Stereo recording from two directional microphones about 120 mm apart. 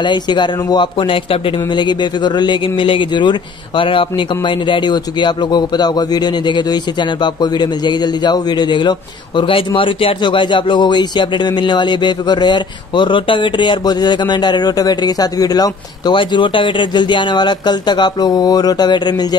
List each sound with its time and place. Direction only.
0.0 s speech: 40° left (ahead or behind)